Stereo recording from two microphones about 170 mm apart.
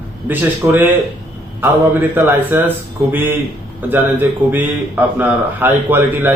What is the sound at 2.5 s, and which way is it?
A man's voice, 15° right (ahead or behind).